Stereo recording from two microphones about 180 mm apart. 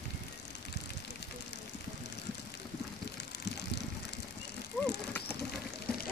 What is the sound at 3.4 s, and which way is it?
Vehicle, 65° left (ahead or behind).